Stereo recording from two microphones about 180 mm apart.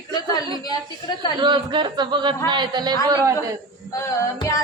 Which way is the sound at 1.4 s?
25° right (ahead or behind).